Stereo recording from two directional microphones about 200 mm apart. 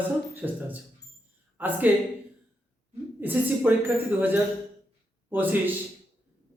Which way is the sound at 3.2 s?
10° right (ahead or behind).